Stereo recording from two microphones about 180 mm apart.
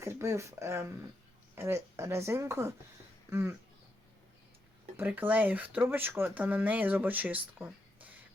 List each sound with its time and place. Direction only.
0.0 s speech: 15° right (ahead or behind)
4.9 s speech: 10° right (ahead or behind)